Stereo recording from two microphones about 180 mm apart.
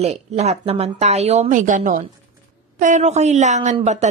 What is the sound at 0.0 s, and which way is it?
A woman's voice, 35° right (ahead or behind).